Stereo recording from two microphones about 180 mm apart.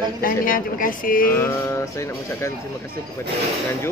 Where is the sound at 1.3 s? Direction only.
15° left (ahead or behind).